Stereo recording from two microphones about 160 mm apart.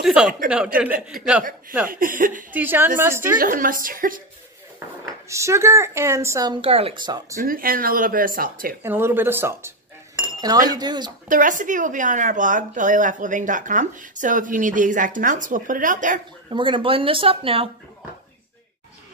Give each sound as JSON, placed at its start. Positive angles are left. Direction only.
{"t": 0.0, "sound": "a woman's voice", "side_deg": -5}
{"t": 1.9, "sound": "speech", "side_deg": -55}
{"t": 2.5, "sound": "speech", "side_deg": -10}
{"t": 3.3, "sound": "speech", "side_deg": -60}
{"t": 5.0, "sound": "speech", "side_deg": -20}
{"t": 6.6, "sound": "speech", "side_deg": -35}
{"t": 7.4, "sound": "speech", "side_deg": -60}
{"t": 8.8, "sound": "speech", "side_deg": -15}
{"t": 10.2, "sound": "chink", "side_deg": -25}
{"t": 10.8, "sound": "speech", "side_deg": -25}
{"t": 11.2, "sound": "speech", "side_deg": -55}
{"t": 16.4, "sound": "speech", "side_deg": -30}